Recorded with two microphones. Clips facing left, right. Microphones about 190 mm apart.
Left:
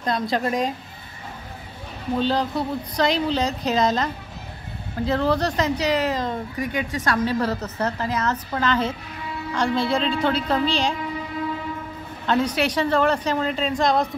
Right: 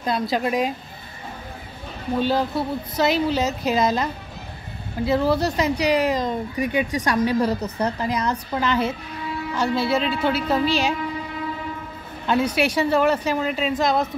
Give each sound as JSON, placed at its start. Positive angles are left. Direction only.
{"t": 0.0, "sound": "a woman's voice", "side_deg": -5}
{"t": 2.1, "sound": "speech", "side_deg": -10}
{"t": 12.3, "sound": "speech", "side_deg": -10}